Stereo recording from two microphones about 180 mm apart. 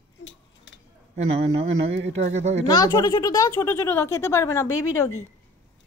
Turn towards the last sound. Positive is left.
turn(degrees=15)  # may be behind; listen again after turning